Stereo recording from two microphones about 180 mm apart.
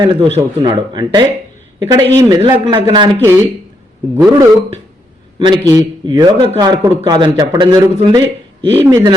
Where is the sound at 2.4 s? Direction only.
30° right (ahead or behind).